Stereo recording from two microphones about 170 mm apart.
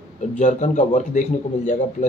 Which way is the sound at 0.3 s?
45° left (ahead or behind).